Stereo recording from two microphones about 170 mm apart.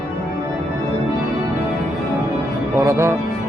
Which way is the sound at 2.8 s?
15° right (ahead or behind).